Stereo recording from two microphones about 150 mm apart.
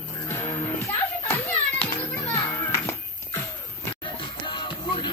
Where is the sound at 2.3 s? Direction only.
15° left (ahead or behind).